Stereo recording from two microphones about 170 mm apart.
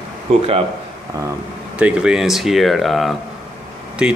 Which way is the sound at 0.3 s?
40° right (ahead or behind).